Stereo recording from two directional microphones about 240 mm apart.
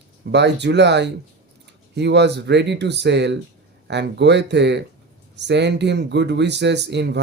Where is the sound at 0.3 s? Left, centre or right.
Right.